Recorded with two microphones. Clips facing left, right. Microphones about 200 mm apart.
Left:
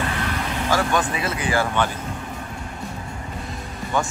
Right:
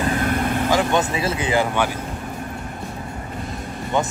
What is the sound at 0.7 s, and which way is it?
Speech, 20° right (ahead or behind).